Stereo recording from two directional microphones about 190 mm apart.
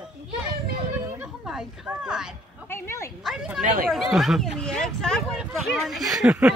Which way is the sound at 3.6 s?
45° right (ahead or behind).